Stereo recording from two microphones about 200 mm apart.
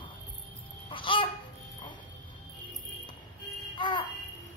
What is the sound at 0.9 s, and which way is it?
Babbling, 25° left (ahead or behind).